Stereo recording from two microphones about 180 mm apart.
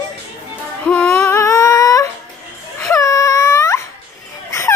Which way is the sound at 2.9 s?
20° left (ahead or behind).